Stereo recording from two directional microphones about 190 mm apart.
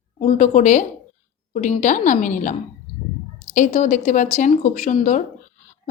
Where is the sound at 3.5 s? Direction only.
40° left (ahead or behind).